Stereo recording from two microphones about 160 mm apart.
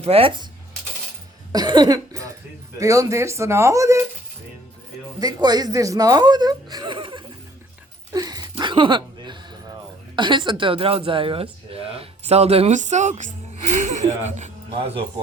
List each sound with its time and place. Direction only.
0.0 s a woman's voice: 35° right (ahead or behind)
1.5 s speech: 25° right (ahead or behind)
5.2 s speech: 25° right (ahead or behind)
8.1 s a sound: 25° right (ahead or behind)
10.2 s a woman's voice: 30° right (ahead or behind)